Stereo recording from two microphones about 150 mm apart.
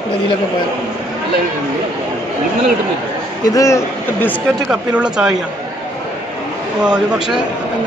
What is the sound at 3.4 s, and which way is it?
Speech, 20° left (ahead or behind).